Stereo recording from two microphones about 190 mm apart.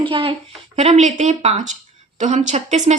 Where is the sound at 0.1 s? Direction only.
30° right (ahead or behind).